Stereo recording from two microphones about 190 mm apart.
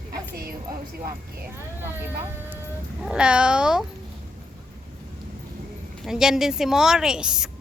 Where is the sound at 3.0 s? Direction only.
5° right (ahead or behind).